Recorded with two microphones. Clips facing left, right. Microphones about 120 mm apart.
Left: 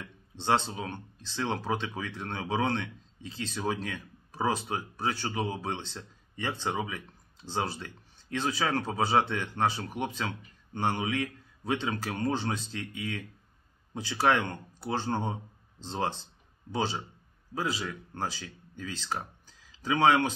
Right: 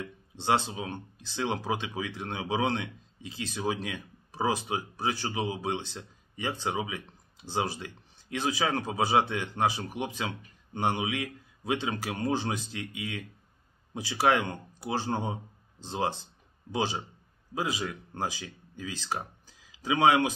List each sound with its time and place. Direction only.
0.0 s speech: 15° right (ahead or behind)